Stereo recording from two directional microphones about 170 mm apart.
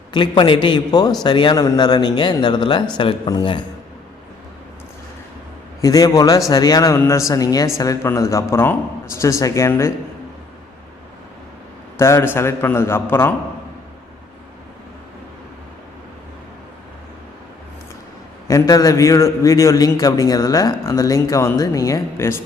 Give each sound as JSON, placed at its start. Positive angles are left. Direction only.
{"t": 0.1, "sound": "a man's voice", "side_deg": 30}
{"t": 5.8, "sound": "a man's voice", "side_deg": 20}
{"t": 11.9, "sound": "a man's voice", "side_deg": 15}
{"t": 18.4, "sound": "a man's voice", "side_deg": 20}